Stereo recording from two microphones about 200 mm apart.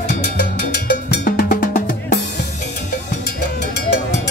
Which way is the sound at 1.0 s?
50° left (ahead or behind).